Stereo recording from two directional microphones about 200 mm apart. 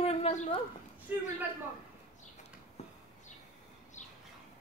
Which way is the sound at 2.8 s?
35° left (ahead or behind).